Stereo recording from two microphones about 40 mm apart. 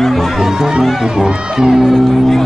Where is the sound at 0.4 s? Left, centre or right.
Centre.